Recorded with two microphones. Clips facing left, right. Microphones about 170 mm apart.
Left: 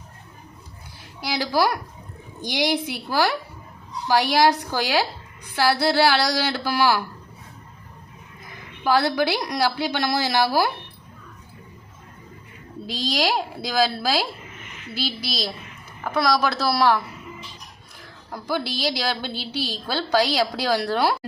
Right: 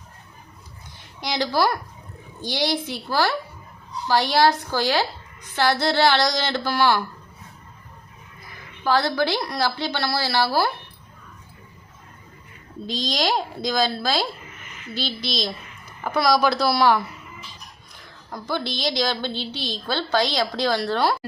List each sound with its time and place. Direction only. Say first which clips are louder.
1.2 s a woman's voice: even; 10° left (ahead or behind)
8.8 s a woman's voice: left 1 dB; 15° left (ahead or behind)
12.8 s a woman's voice: even; 5° left (ahead or behind)
18.3 s a woman's voice: left 1 dB; 10° left (ahead or behind)